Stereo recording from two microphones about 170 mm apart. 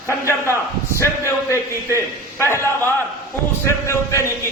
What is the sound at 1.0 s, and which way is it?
A man's voice, 15° left (ahead or behind).